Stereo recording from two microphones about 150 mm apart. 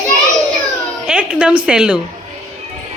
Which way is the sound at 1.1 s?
5° right (ahead or behind).